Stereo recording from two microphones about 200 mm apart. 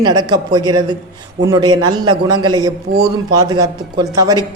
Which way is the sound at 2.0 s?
20° right (ahead or behind).